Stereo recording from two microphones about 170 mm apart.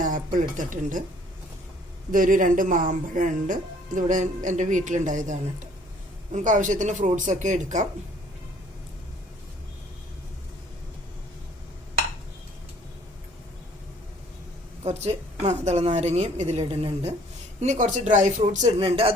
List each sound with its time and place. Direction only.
0.0 s speech: 50° right (ahead or behind)
2.1 s speech: 50° right (ahead or behind)
14.8 s a woman's voice: 40° right (ahead or behind)
18.9 s a woman's voice: 35° right (ahead or behind)